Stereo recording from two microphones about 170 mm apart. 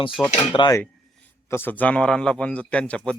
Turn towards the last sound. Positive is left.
turn(degrees=5)  # may be behind; listen again after turning